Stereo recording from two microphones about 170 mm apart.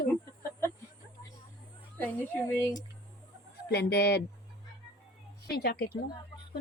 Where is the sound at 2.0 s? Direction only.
10° left (ahead or behind).